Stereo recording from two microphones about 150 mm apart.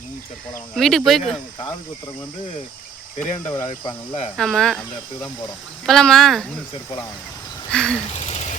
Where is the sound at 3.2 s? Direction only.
15° left (ahead or behind).